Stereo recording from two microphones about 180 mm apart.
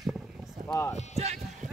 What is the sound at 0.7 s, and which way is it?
Speech, 15° left (ahead or behind).